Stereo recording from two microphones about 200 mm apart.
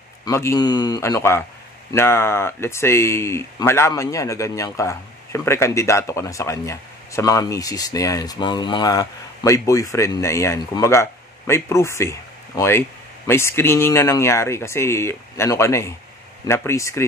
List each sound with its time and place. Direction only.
0.2 s speech: 15° left (ahead or behind)